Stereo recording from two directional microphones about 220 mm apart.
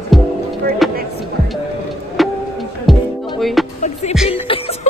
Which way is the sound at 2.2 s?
Centre (ahead or behind).